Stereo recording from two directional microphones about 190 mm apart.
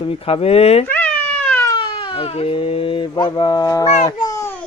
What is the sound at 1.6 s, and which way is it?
Speech, 25° left (ahead or behind).